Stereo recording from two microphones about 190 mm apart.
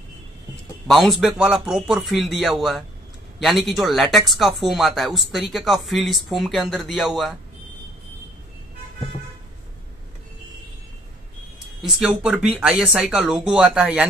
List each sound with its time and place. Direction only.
0.8 s speech: centre (ahead or behind)
11.8 s speech: centre (ahead or behind)